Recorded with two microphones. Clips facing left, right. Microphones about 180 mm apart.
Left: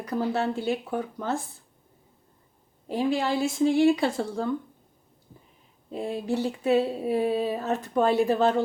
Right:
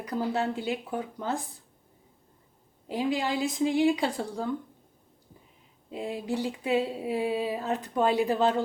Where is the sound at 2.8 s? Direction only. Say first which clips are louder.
Left 3 dB; 15° right (ahead or behind).